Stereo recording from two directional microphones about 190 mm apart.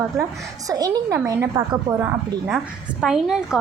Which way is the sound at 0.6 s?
20° right (ahead or behind).